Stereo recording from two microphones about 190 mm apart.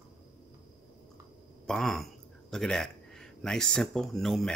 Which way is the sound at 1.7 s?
Centre (ahead or behind).